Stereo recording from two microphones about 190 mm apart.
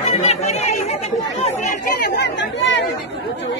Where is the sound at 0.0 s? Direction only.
35° left (ahead or behind).